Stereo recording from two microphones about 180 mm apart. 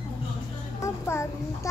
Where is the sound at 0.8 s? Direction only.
15° left (ahead or behind).